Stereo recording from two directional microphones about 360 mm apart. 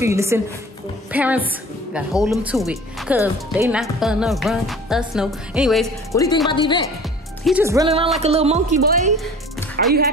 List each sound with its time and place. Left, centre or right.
0.0 s speech: centre
7.4 s speech: centre; by 9.9 s right